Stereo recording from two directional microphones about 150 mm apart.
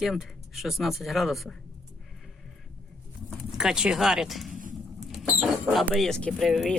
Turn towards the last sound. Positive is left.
turn(degrees=0)  # may be behind; listen again after turning